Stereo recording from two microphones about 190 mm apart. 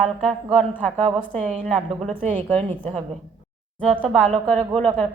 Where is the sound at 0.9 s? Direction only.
35° right (ahead or behind).